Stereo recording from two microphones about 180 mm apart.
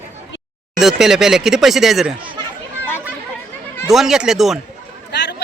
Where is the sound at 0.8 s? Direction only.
Centre (ahead or behind).